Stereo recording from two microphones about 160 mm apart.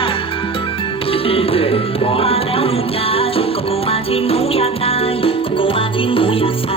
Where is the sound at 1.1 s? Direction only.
35° left (ahead or behind).